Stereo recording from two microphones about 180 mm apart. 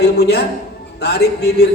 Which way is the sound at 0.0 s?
65° left (ahead or behind).